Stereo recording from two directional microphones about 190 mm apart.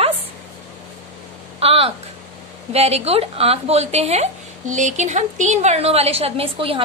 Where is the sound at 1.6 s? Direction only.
30° right (ahead or behind).